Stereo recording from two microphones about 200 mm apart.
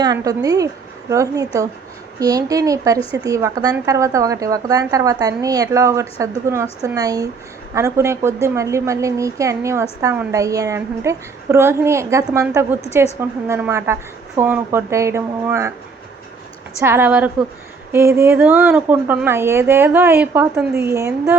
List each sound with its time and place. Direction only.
0.0 s a woman's voice: 20° right (ahead or behind)
16.8 s a woman's voice: 10° right (ahead or behind)